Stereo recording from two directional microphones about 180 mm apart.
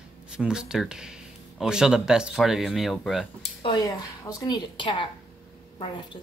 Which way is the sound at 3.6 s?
25° left (ahead or behind).